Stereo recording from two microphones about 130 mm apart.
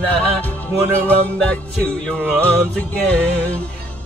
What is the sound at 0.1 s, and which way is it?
Music, 10° left (ahead or behind).